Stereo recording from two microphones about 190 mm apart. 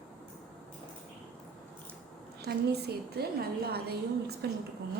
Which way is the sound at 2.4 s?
60° right (ahead or behind).